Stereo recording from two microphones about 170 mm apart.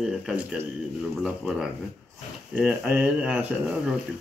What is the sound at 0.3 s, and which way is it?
A woman's voice, 5° right (ahead or behind).